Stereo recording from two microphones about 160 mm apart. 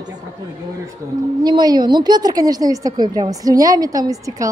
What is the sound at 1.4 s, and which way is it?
A woman's voice, 25° right (ahead or behind).